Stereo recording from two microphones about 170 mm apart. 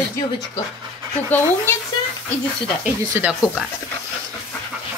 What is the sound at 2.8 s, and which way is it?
Speech, 10° right (ahead or behind).